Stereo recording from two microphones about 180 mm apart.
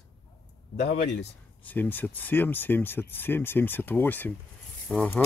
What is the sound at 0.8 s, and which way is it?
Speech, 60° left (ahead or behind).